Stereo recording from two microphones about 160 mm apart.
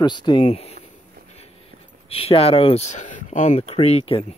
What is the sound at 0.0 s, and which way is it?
Speech, 30° left (ahead or behind).